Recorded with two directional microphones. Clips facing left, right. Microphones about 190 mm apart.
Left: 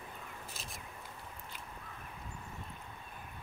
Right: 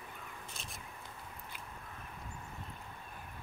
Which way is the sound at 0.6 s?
5° left (ahead or behind).